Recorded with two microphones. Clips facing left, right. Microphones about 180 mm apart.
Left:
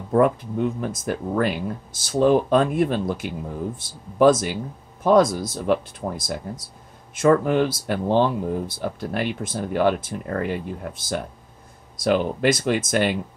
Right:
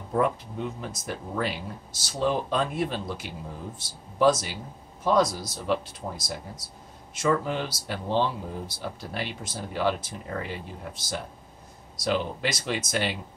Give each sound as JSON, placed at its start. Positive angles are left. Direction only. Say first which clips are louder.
{"t": 0.1, "sound": "speech", "louder": "left 7 dB", "side_deg": 50}